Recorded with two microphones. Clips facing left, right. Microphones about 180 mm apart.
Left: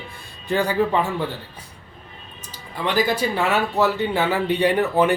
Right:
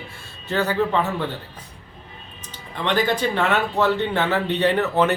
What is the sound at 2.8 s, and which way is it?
Speech, 10° left (ahead or behind).